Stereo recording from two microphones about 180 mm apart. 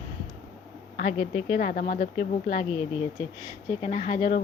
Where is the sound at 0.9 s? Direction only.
40° left (ahead or behind).